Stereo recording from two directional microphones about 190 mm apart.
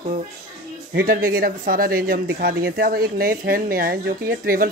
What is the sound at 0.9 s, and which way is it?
Speech, 50° right (ahead or behind).